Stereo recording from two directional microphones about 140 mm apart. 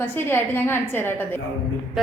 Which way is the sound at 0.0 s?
15° left (ahead or behind).